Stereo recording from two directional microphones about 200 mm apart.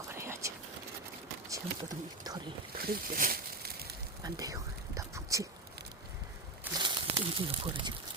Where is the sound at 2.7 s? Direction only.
45° right (ahead or behind).